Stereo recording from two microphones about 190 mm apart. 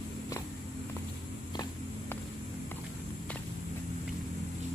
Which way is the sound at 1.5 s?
20° left (ahead or behind).